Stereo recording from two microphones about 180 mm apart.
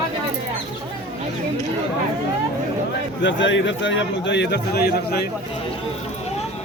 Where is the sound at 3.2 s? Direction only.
90° left; by 5.2 s 65° left (ahead or behind).